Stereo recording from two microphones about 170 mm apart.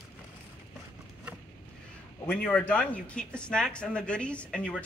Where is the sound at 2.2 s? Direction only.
5° left (ahead or behind).